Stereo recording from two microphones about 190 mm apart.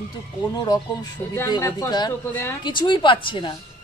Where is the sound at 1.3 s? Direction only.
15° left (ahead or behind).